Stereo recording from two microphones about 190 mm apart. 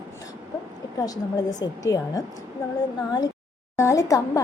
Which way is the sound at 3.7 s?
15° left (ahead or behind).